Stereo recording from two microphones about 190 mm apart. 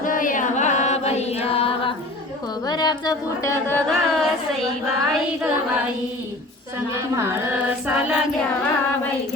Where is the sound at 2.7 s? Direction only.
20° left (ahead or behind).